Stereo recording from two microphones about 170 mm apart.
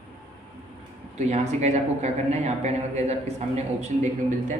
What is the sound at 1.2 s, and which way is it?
Speech, 40° right (ahead or behind).